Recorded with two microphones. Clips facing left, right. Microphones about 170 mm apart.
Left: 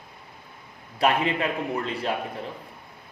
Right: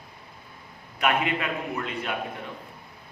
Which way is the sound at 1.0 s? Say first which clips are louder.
Left 2 dB; 30° left (ahead or behind).